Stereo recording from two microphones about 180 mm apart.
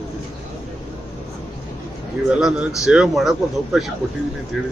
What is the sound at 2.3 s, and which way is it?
A man's voice, centre (ahead or behind).